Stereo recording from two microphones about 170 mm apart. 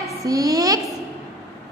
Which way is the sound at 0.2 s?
20° right (ahead or behind).